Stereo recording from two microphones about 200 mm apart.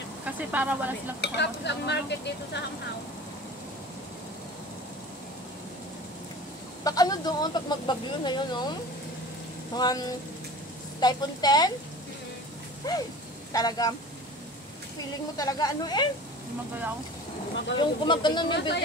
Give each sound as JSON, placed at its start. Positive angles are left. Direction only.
{"t": 0.2, "sound": "speech", "side_deg": -5}
{"t": 1.2, "sound": "speech", "side_deg": 60}
{"t": 6.8, "sound": "speech", "side_deg": 20}
{"t": 9.8, "sound": "speech", "side_deg": 20}
{"t": 12.8, "sound": "speech", "side_deg": 20}
{"t": 15.3, "sound": "speech", "side_deg": 20}
{"t": 17.7, "sound": "speech", "side_deg": 25}